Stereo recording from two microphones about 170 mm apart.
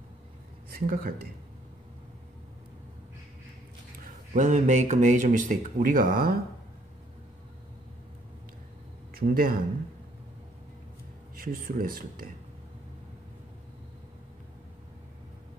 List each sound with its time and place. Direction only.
0.7 s speech: 60° right (ahead or behind)
4.0 s speech: 45° right (ahead or behind)
9.1 s speech: 60° right (ahead or behind)
11.3 s speech: 60° right (ahead or behind)